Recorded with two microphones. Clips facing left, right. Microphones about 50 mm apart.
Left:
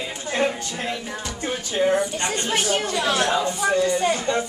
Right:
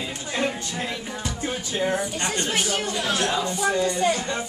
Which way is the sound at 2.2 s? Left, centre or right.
Left.